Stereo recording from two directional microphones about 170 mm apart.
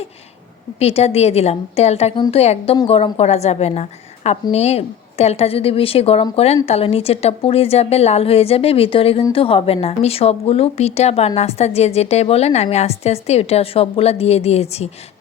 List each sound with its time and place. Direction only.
0.8 s a woman's voice: 35° left (ahead or behind)